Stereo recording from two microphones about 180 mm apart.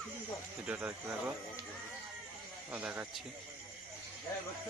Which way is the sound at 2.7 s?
5° right (ahead or behind).